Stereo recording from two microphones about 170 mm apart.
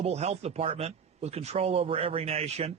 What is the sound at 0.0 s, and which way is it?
Speech, 40° right (ahead or behind).